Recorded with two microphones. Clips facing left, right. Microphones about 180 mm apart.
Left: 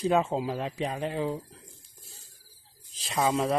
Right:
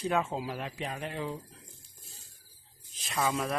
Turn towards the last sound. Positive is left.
turn(degrees=25)  # may be behind; listen again after turning